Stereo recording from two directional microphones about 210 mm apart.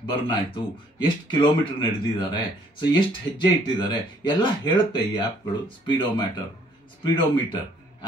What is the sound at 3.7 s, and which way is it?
Speech, 20° left (ahead or behind).